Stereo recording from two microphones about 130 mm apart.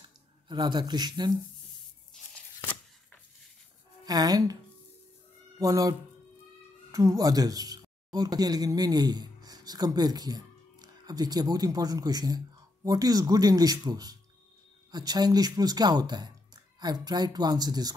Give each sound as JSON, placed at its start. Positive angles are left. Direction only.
{"t": 0.0, "sound": "speech", "side_deg": -35}
{"t": 4.0, "sound": "speech", "side_deg": -30}
{"t": 5.6, "sound": "speech", "side_deg": -25}